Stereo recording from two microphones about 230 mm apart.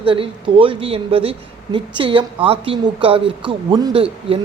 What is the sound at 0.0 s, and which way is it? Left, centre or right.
Speech, right.